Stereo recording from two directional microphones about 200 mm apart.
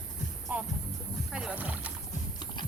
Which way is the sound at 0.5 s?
5° right (ahead or behind).